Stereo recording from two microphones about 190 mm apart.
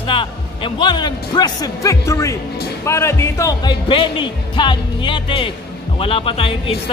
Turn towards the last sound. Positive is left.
turn(degrees=30)  # may be behind; listen again after turning